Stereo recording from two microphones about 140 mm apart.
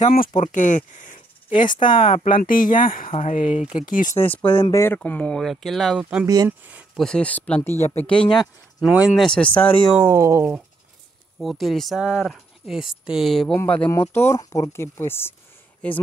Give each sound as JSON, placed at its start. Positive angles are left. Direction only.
{"t": 0.4, "sound": "speech", "side_deg": 65}
{"t": 3.1, "sound": "speech", "side_deg": 55}
{"t": 4.1, "sound": "speech", "side_deg": 15}
{"t": 6.2, "sound": "speech", "side_deg": -25}
{"t": 7.0, "sound": "speech", "side_deg": 5}
{"t": 8.8, "sound": "speech", "side_deg": -5}
{"t": 9.9, "sound": "speech", "side_deg": -20}
{"t": 11.3, "sound": "speech", "side_deg": 0}
{"t": 13.6, "sound": "speech", "side_deg": 15}